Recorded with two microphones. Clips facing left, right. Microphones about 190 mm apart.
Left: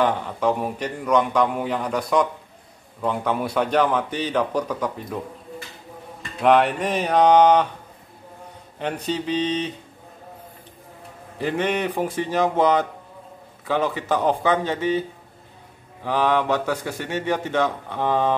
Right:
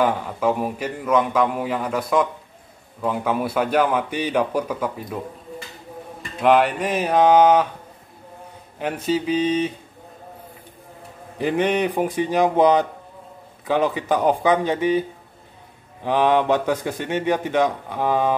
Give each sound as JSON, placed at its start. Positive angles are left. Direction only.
{"t": 0.0, "sound": "a man's voice", "side_deg": -5}
{"t": 6.4, "sound": "a man's voice", "side_deg": 0}
{"t": 8.7, "sound": "a man's voice", "side_deg": -5}
{"t": 11.3, "sound": "a man's voice", "side_deg": -15}